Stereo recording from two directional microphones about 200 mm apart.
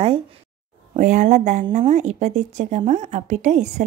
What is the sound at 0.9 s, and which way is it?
A woman's voice, 35° right (ahead or behind).